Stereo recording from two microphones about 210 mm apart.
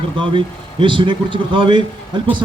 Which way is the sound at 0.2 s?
25° right (ahead or behind).